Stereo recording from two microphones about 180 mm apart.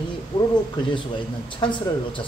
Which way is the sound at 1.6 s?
25° left (ahead or behind).